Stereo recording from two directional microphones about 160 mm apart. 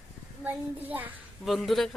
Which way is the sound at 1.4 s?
Centre (ahead or behind).